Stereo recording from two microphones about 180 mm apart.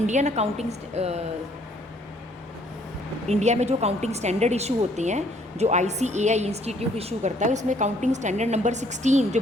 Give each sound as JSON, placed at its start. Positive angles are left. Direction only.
{"t": 0.0, "sound": "a woman's voice", "side_deg": -40}
{"t": 3.2, "sound": "a woman's voice", "side_deg": -40}